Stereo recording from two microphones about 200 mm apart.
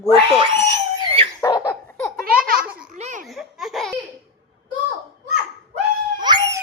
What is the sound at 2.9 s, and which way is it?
Speech, 35° right (ahead or behind).